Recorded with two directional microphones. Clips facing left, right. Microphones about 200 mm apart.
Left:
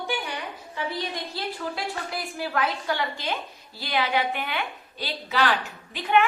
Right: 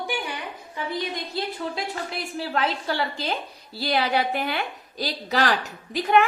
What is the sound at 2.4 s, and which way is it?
A woman's voice, 30° right (ahead or behind).